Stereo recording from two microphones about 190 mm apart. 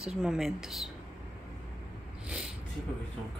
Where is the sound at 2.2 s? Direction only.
5° right (ahead or behind).